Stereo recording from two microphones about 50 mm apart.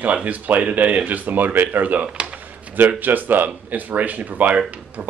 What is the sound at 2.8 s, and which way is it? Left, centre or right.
Speech, right.